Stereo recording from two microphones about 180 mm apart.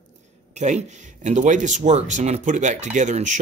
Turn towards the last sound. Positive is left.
turn(degrees=-45)  # may be behind; listen again after turning